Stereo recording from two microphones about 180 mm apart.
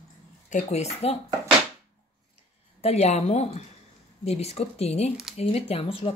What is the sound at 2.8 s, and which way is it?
Speech, 35° left (ahead or behind).